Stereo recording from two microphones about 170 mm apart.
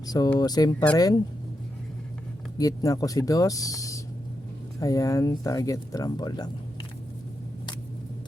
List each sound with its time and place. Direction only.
0.0 s speech: 20° left (ahead or behind)
2.6 s speech: 20° left (ahead or behind)